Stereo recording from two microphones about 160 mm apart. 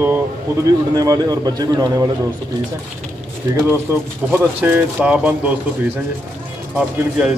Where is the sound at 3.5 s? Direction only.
25° right (ahead or behind).